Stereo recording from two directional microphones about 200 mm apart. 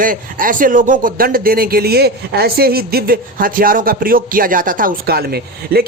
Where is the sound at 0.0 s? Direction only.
45° right (ahead or behind).